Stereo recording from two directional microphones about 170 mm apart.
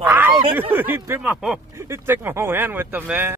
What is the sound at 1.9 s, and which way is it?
Speech, 15° right (ahead or behind).